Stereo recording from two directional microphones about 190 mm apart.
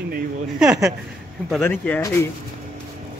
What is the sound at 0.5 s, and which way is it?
Speech, 5° right (ahead or behind).